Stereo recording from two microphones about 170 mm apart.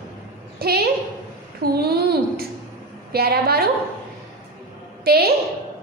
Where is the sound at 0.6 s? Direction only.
65° right (ahead or behind).